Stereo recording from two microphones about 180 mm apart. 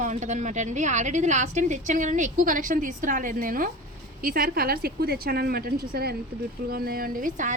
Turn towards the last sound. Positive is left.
turn(degrees=-45)  # may be behind; listen again after turning